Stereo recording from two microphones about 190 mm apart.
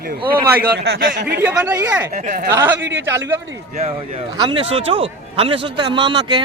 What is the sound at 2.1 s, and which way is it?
Speech, 40° right (ahead or behind).